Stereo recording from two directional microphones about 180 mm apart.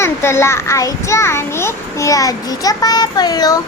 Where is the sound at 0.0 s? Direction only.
15° left (ahead or behind).